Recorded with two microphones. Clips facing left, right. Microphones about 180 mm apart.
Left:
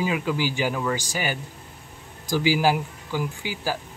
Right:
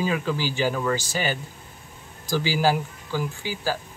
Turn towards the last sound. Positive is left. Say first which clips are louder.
# right 1 dB
turn(degrees=15)  # may be behind; listen again after turning